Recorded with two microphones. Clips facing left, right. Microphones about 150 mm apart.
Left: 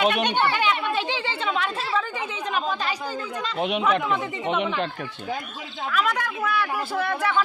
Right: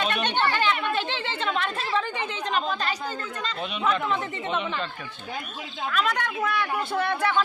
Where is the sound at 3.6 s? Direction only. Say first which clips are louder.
Left 10 dB; 75° left (ahead or behind).